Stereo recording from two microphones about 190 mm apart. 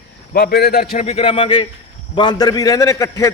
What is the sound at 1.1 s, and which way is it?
A man's voice, 30° left (ahead or behind).